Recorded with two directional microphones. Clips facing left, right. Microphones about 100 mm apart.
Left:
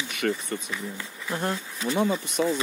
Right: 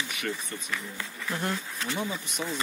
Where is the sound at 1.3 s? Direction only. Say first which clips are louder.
Left 3 dB; 20° left (ahead or behind).